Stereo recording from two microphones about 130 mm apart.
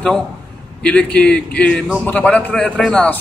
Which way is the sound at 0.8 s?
10° left (ahead or behind).